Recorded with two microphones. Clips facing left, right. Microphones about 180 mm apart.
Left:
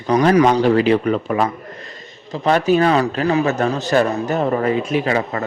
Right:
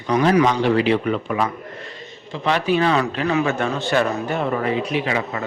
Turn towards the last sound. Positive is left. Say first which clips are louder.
# left 4 dB
turn(degrees=45)  # may be behind; listen again after turning